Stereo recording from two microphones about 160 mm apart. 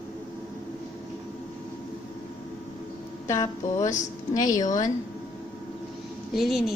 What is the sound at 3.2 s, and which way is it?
Mantra, 20° left (ahead or behind).